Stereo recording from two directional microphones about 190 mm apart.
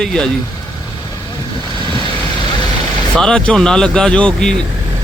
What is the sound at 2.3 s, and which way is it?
Vehicle, 25° left (ahead or behind).